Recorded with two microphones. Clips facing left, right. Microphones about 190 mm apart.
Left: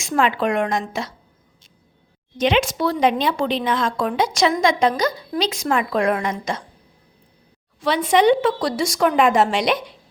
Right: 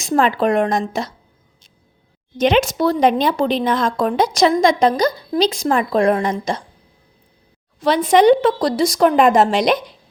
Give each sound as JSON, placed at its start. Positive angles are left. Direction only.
{"t": 0.0, "sound": "a woman's voice", "side_deg": -40}
{"t": 2.4, "sound": "a woman's voice", "side_deg": -40}
{"t": 7.8, "sound": "a woman's voice", "side_deg": -40}